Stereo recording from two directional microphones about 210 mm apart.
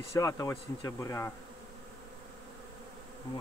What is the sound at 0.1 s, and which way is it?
Bee, 15° left (ahead or behind).